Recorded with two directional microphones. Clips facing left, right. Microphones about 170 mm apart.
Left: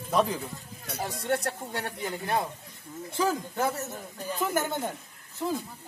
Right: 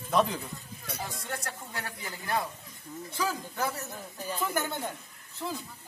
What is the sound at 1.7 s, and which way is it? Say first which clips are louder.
Speech: left 6 dB; 25° left (ahead or behind).